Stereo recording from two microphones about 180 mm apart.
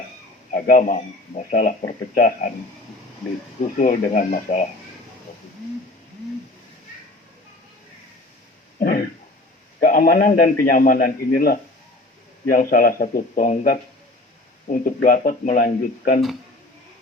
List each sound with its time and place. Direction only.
0.5 s a man's voice: 50° left (ahead or behind)
3.8 s a man's voice: 50° left (ahead or behind)
8.8 s a man's voice: 55° left (ahead or behind)